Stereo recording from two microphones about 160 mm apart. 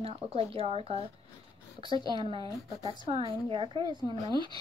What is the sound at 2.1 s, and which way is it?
Speech, 30° right (ahead or behind).